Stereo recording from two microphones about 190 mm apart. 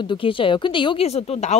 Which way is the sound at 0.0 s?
25° left (ahead or behind).